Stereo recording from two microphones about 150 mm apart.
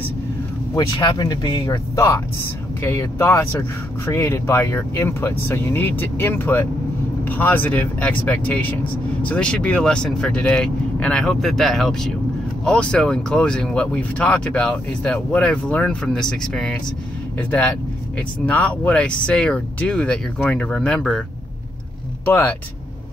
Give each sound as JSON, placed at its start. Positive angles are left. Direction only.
{"t": 0.7, "sound": "speech", "side_deg": 30}
{"t": 2.8, "sound": "speech", "side_deg": 15}
{"t": 22.2, "sound": "speech", "side_deg": 10}